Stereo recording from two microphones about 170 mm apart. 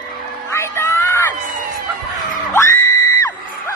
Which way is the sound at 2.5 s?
15° left (ahead or behind).